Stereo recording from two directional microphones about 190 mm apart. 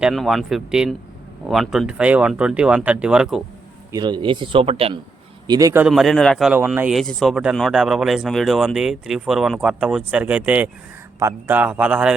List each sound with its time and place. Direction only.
0.0 s a man's voice: centre (ahead or behind)
3.9 s speech: 25° right (ahead or behind)
5.5 s a man's voice: 15° right (ahead or behind)
5.8 s a man's voice: centre (ahead or behind)